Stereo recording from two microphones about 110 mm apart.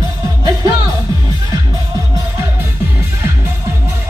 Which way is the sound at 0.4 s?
35° right (ahead or behind).